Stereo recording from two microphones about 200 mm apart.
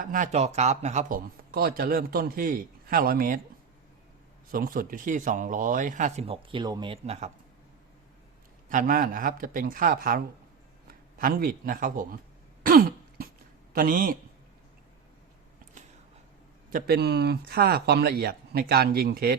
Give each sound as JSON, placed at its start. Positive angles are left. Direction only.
{"t": 0.0, "sound": "speech", "side_deg": -40}
{"t": 4.5, "sound": "speech", "side_deg": -45}
{"t": 8.7, "sound": "speech", "side_deg": -45}
{"t": 12.6, "sound": "cough", "side_deg": -50}
{"t": 13.7, "sound": "speech", "side_deg": -45}
{"t": 16.7, "sound": "speech", "side_deg": -50}